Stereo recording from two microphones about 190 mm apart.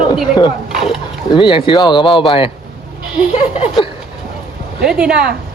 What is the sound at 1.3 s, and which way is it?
Speech, 25° left (ahead or behind).